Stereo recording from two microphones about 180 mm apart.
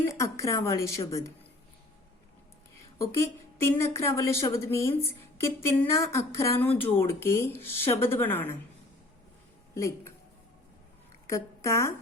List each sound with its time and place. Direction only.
0.1 s speech: 15° left (ahead or behind)
3.0 s speech: 15° left (ahead or behind)
9.7 s speech: 15° left (ahead or behind)
11.3 s speech: 15° left (ahead or behind)